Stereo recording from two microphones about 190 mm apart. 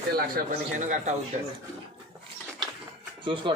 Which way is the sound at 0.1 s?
45° right (ahead or behind).